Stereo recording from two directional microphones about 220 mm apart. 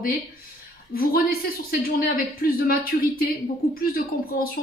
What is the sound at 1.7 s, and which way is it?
A woman's voice, 40° left (ahead or behind).